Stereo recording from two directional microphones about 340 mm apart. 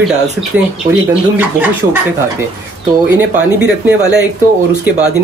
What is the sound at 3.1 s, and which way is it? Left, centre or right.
Speech, centre.